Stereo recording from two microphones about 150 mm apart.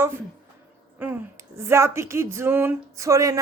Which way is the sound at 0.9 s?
15° right (ahead or behind).